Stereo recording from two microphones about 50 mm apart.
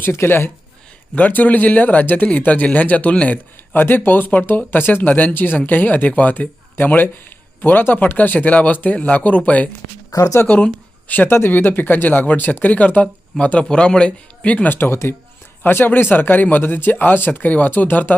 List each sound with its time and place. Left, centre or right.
0.0 s speech: left
1.1 s speech: left
3.8 s speech: left
10.2 s speech: left
10.4 s speech: left
11.3 s speech: left
14.7 s speech: left
15.6 s speech: left